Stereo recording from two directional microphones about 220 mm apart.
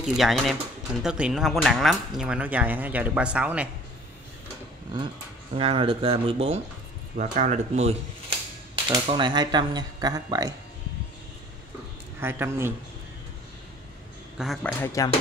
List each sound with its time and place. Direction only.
0.0 s speech: centre (ahead or behind)
5.6 s speech: 25° right (ahead or behind)
12.2 s speech: 10° right (ahead or behind)
14.4 s speech: 5° left (ahead or behind)